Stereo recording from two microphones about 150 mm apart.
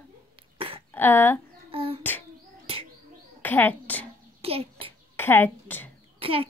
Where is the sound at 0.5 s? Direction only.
35° right (ahead or behind).